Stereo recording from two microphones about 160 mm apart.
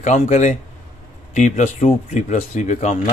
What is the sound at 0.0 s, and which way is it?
A man's voice, 50° left (ahead or behind).